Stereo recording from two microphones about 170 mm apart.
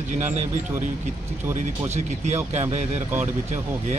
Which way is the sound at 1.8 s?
40° right (ahead or behind).